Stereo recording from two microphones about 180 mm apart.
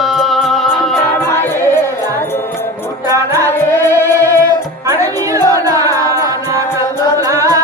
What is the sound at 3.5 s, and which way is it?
Music, 15° left (ahead or behind).